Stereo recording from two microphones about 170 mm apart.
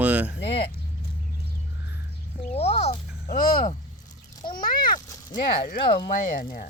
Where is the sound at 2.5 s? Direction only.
40° left (ahead or behind).